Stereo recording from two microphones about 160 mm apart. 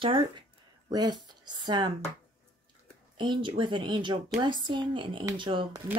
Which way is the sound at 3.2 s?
30° right (ahead or behind).